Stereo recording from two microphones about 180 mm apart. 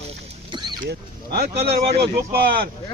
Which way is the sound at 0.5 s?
25° right (ahead or behind).